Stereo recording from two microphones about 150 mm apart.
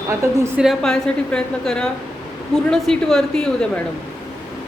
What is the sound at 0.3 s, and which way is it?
Speech, 15° right (ahead or behind).